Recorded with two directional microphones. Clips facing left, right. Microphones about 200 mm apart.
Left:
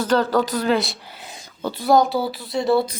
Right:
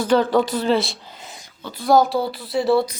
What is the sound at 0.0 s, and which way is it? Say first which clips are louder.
Speech: right 2 dB; 10° right (ahead or behind).